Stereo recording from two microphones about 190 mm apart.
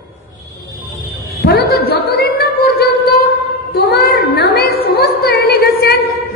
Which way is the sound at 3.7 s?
55° left (ahead or behind).